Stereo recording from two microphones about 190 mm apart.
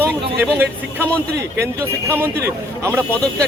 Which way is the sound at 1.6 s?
10° right (ahead or behind).